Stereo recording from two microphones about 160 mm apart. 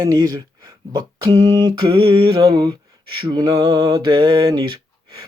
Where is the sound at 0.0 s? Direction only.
25° right (ahead or behind).